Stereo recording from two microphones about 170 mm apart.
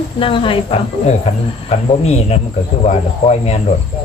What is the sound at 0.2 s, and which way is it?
A woman's voice, 30° left (ahead or behind).